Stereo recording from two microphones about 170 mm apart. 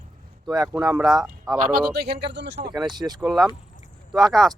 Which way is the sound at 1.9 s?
80° right.